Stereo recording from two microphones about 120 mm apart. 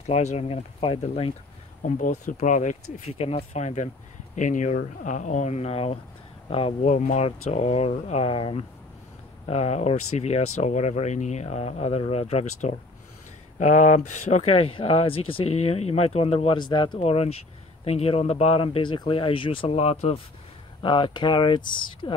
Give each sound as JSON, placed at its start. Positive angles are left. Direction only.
{"t": 0.0, "sound": "speech", "side_deg": 65}
{"t": 1.9, "sound": "speech", "side_deg": 90}
{"t": 3.2, "sound": "speech", "side_deg": 55}
{"t": 4.4, "sound": "speech", "side_deg": 90}
{"t": 6.8, "sound": "speech", "side_deg": 75}
{"t": 8.3, "sound": "speech", "side_deg": 45}
{"t": 9.5, "sound": "speech", "side_deg": 65}
{"t": 13.6, "sound": "speech", "side_deg": 90}
{"t": 17.0, "sound": "speech", "side_deg": 55}
{"t": 20.8, "sound": "speech", "side_deg": 45}